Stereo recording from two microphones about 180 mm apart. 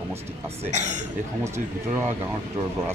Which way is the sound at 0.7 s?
40° right (ahead or behind).